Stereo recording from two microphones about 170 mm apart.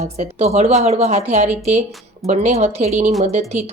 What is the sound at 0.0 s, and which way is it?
A woman's voice, 40° right (ahead or behind).